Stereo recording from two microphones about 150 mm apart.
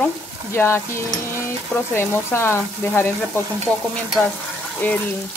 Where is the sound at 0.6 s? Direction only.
15° left (ahead or behind).